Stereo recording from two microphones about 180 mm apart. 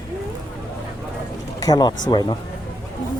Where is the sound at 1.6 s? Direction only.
20° left (ahead or behind).